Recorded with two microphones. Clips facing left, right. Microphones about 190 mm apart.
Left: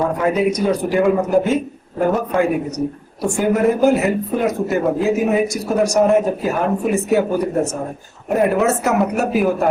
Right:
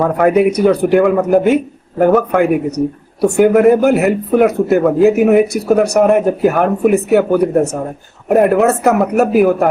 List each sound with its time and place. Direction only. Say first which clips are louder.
0.2 s a man's voice: right 6 dB; 65° right (ahead or behind)